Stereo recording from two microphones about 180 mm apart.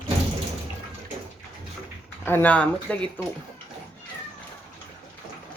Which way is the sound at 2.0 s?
10° left (ahead or behind).